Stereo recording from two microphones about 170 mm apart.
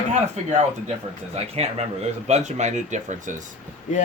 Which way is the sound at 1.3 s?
40° right (ahead or behind).